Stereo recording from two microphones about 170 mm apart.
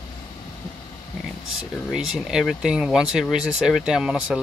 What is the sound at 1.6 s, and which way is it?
Speech, 5° right (ahead or behind).